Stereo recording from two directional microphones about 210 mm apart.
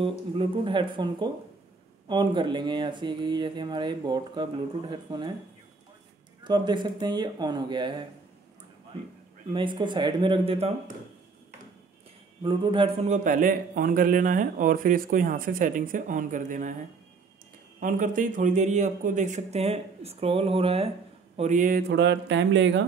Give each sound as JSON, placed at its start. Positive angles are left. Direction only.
{"t": 0.4, "sound": "speech", "side_deg": -25}
{"t": 6.4, "sound": "speech", "side_deg": -20}
{"t": 9.5, "sound": "speech", "side_deg": -25}
{"t": 12.4, "sound": "a man's voice", "side_deg": -25}
{"t": 17.7, "sound": "a man's voice", "side_deg": -40}